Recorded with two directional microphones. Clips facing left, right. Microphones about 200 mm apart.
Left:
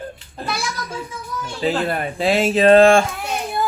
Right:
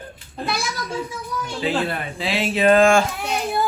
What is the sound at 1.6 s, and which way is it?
Speech, 45° left (ahead or behind).